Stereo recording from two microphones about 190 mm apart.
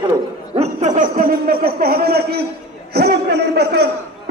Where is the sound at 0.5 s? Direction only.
35° right (ahead or behind); by 3.8 s 60° right (ahead or behind).